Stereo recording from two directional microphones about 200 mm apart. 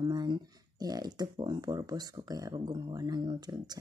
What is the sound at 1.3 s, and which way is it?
Speech, 20° right (ahead or behind).